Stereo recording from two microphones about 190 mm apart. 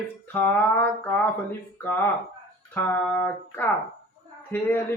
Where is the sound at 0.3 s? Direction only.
10° left (ahead or behind).